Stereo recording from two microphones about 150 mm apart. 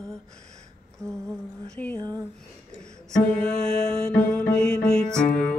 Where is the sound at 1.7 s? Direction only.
10° left (ahead or behind).